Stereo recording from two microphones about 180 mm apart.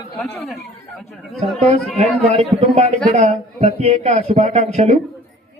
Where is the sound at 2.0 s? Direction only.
35° right (ahead or behind).